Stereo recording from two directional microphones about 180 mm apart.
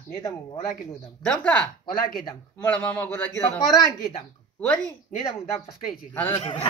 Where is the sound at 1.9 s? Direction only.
55° left (ahead or behind).